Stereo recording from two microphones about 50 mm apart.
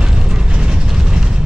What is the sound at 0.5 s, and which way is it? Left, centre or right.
Vehicle, centre.